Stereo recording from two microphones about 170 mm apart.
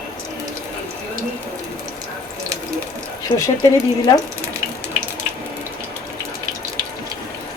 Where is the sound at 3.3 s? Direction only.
15° left (ahead or behind).